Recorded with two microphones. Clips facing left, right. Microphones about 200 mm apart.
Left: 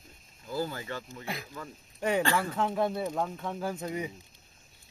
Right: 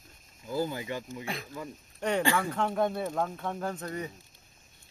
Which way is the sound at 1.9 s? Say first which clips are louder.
Even; 5° left (ahead or behind).